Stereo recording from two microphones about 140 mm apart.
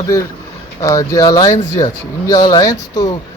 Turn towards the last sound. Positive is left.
turn(degrees=25)  # may be behind; listen again after turning